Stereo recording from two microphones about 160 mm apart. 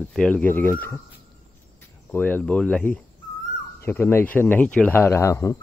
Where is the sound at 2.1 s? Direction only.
10° left (ahead or behind).